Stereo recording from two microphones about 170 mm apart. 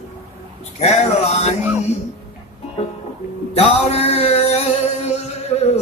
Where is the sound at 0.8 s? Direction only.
40° left (ahead or behind).